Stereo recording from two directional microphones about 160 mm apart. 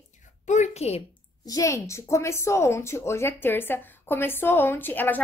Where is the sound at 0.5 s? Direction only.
45° left (ahead or behind).